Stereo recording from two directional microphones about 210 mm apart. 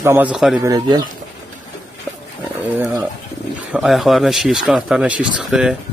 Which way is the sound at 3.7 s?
Centre (ahead or behind).